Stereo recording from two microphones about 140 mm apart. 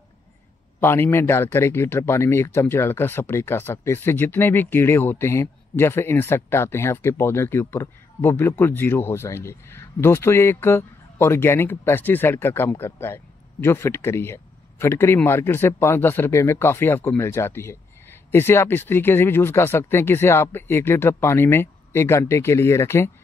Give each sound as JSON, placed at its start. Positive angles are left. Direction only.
{"t": 0.7, "sound": "speech", "side_deg": 15}